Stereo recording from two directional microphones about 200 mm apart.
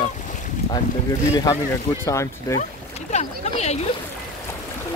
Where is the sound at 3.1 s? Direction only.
35° left (ahead or behind).